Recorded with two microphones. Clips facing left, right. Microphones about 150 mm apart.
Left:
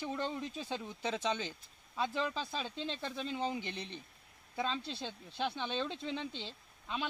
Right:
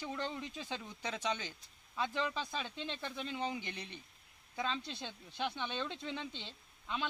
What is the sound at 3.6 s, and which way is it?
Speech, 15° right (ahead or behind).